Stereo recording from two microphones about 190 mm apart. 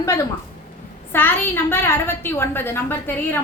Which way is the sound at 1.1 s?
10° left (ahead or behind).